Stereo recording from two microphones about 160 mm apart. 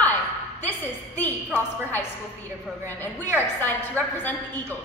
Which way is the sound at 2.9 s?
15° left (ahead or behind).